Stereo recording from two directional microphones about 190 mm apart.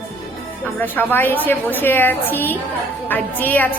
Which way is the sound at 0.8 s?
10° left (ahead or behind).